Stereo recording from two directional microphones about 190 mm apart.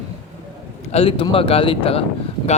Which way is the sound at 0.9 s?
30° left (ahead or behind).